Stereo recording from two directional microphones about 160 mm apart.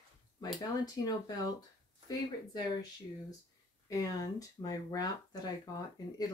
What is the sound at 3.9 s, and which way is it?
Speech, 20° left (ahead or behind).